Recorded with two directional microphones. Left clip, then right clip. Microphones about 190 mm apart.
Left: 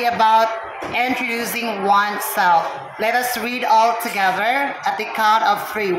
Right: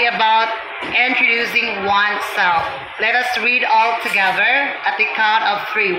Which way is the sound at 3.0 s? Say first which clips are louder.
Right 3 dB; 25° left (ahead or behind).